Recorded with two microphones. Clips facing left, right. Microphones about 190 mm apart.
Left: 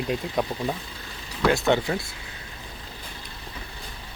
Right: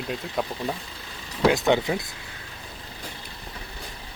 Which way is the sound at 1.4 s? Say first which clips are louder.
Right 1 dB; 15° right (ahead or behind).